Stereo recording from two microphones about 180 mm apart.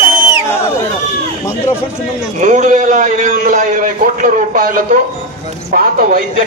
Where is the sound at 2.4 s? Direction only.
45° right (ahead or behind).